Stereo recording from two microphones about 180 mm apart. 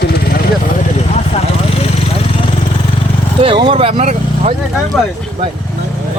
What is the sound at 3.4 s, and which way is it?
Speech, 25° right (ahead or behind).